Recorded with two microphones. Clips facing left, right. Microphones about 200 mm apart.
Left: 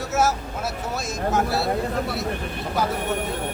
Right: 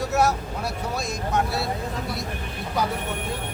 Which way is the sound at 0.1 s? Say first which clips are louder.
Left 1 dB; centre (ahead or behind).